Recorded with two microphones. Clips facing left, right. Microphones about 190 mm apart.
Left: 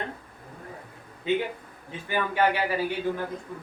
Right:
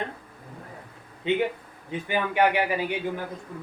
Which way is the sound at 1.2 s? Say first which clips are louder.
Right 2 dB; 20° right (ahead or behind).